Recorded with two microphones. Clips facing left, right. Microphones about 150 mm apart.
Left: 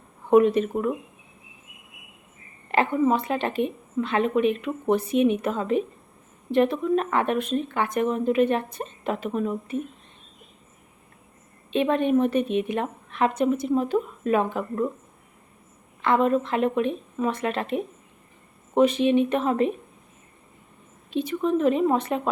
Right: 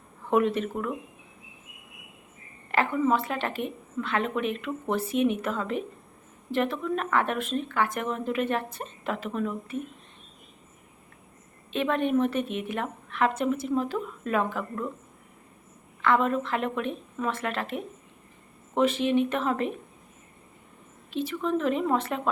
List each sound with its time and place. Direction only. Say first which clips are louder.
0.3 s speech: left 6 dB; 20° left (ahead or behind)
2.7 s speech: left 3 dB; 20° left (ahead or behind)
11.7 s speech: left 4 dB; 20° left (ahead or behind)
16.0 s speech: left 3 dB; 20° left (ahead or behind)
21.1 s speech: left 4 dB; 15° left (ahead or behind)